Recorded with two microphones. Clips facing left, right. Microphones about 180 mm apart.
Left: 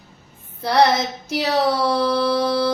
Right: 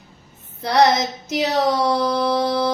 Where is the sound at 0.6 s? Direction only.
20° right (ahead or behind).